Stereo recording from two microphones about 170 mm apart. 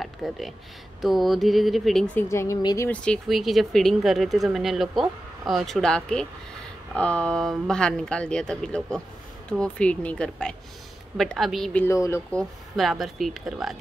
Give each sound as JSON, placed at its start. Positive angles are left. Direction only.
{"t": 0.0, "sound": "speech", "side_deg": 0}
{"t": 2.1, "sound": "speech", "side_deg": 15}
{"t": 2.9, "sound": "speech", "side_deg": 5}
{"t": 11.8, "sound": "speech", "side_deg": 15}
{"t": 12.3, "sound": "speech", "side_deg": 5}